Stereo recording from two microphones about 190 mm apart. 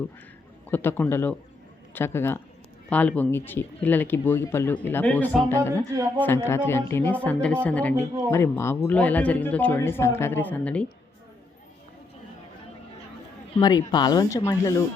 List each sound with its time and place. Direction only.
0.7 s speech: 10° left (ahead or behind)
13.6 s speech: 20° left (ahead or behind)